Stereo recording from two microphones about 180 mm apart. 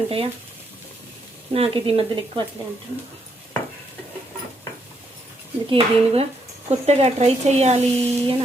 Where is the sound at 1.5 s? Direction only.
30° right (ahead or behind).